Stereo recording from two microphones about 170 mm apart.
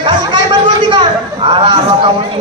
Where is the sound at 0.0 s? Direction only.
25° right (ahead or behind).